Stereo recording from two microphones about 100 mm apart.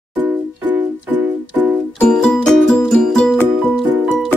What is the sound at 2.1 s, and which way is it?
Music, 5° left (ahead or behind).